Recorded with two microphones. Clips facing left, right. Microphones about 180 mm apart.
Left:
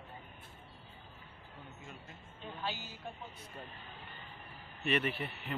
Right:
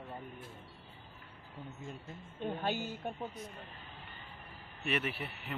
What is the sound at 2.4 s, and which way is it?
Speech, 50° right (ahead or behind).